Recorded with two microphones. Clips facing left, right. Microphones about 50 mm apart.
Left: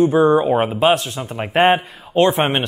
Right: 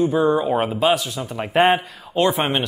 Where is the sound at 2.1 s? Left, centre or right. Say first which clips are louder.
Left 4 dB; left.